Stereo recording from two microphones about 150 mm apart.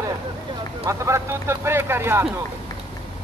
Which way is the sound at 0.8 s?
20° right (ahead or behind).